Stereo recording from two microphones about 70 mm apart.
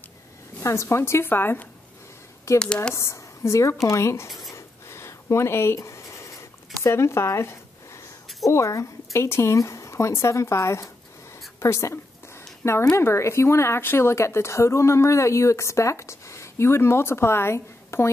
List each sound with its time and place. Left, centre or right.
0.6 s speech: left
2.6 s speech: centre
2.9 s a woman's voice: left
4.6 s writing: left
6.8 s speech: left
11.6 s a sound: left
12.9 s speech: left